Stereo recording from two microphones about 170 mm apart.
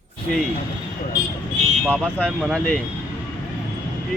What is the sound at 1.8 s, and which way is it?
Speech, 5° left (ahead or behind).